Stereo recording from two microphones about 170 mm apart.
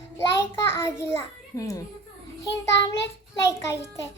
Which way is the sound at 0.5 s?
15° left (ahead or behind).